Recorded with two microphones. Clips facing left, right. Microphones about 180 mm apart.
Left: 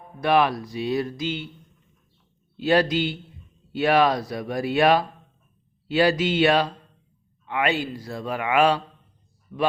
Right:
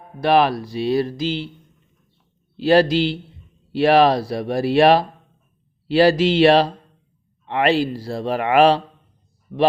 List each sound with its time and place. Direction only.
0.2 s speech: 35° right (ahead or behind)
2.6 s speech: 35° right (ahead or behind)